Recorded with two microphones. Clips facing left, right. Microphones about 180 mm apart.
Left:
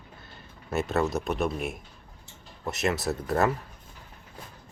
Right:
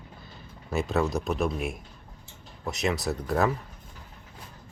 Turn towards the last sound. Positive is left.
turn(degrees=0)  # may be behind; listen again after turning